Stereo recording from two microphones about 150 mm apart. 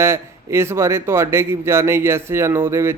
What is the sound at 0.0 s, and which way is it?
Speech, 15° right (ahead or behind).